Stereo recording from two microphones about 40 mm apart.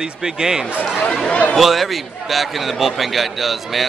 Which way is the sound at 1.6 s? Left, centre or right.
Centre.